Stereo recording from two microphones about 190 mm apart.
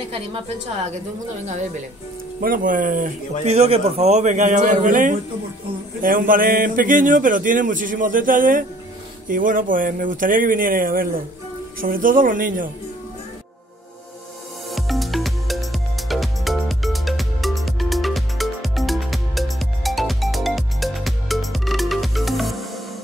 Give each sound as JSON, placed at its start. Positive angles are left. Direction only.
{"t": 2.4, "sound": "speech", "side_deg": -45}
{"t": 3.4, "sound": "a man's voice", "side_deg": -35}
{"t": 14.7, "sound": "music", "side_deg": 0}